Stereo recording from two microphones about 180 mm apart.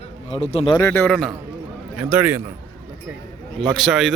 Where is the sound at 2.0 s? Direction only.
10° right (ahead or behind).